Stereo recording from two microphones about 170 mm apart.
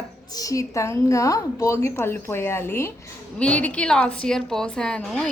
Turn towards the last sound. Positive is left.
turn(degrees=5)  # may be behind; listen again after turning